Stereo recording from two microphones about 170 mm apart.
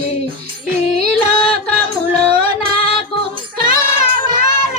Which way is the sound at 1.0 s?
35° left (ahead or behind).